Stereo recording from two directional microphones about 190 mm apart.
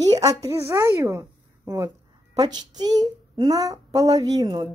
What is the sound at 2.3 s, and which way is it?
A child's voice, 20° right (ahead or behind).